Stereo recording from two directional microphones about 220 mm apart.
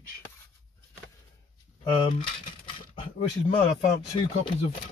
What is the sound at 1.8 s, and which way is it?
Speech, 25° left (ahead or behind).